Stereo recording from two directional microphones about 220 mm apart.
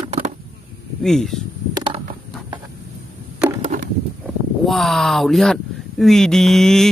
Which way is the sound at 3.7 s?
40° right (ahead or behind).